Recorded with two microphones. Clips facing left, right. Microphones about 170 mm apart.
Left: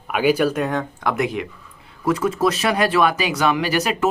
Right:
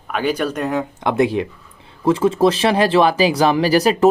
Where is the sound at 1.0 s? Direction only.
25° right (ahead or behind).